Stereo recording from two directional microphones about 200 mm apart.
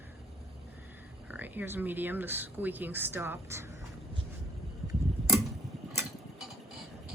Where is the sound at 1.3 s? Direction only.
10° right (ahead or behind).